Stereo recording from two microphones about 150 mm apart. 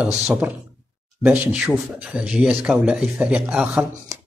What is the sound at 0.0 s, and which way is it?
Speech, 10° right (ahead or behind).